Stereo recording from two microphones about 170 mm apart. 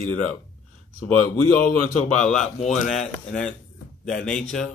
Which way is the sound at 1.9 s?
45° left (ahead or behind).